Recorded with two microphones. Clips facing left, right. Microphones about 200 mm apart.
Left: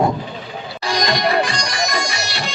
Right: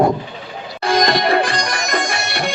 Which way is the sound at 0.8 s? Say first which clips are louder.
Right 4 dB; 50° right (ahead or behind).